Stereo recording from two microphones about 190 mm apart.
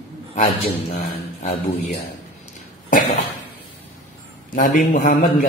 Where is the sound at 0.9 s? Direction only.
40° left (ahead or behind).